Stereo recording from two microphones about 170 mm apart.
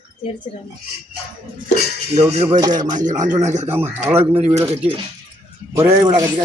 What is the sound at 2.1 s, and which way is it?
Cutlery, 40° right (ahead or behind).